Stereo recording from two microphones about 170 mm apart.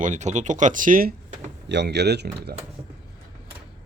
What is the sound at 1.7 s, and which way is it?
Speech, 85° right.